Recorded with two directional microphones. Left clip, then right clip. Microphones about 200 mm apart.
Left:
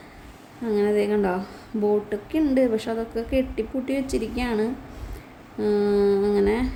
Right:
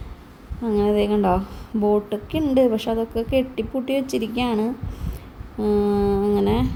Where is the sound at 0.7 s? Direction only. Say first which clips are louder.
Right 2 dB; 15° right (ahead or behind).